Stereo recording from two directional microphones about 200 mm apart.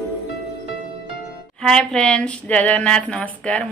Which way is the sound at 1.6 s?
5° left (ahead or behind).